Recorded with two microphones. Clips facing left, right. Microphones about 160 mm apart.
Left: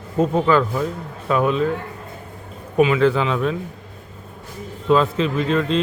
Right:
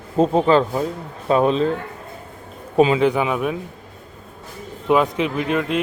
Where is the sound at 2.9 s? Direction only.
15° right (ahead or behind).